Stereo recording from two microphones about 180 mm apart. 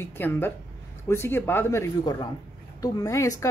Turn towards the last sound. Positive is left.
turn(degrees=20)  # may be behind; listen again after turning